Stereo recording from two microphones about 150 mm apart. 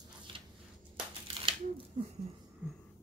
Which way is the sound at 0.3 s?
35° right (ahead or behind).